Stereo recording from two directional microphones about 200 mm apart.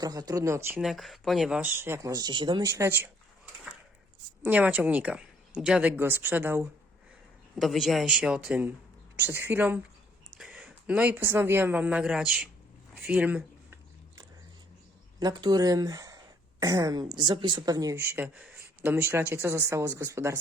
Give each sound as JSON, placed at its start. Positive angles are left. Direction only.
{"t": 0.0, "sound": "speech", "side_deg": -20}
{"t": 4.4, "sound": "a man's voice", "side_deg": -10}
{"t": 15.2, "sound": "speech", "side_deg": -20}